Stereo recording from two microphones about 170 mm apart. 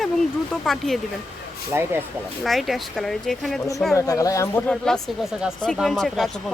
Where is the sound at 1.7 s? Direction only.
10° right (ahead or behind).